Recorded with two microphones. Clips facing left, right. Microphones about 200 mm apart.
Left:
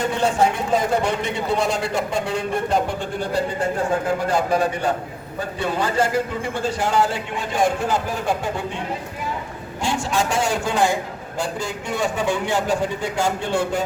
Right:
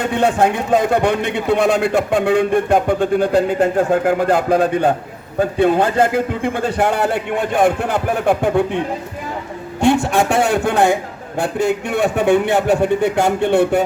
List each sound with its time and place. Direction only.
0.2 s a man's voice: 60° right (ahead or behind)
9.8 s a man's voice: 60° right (ahead or behind)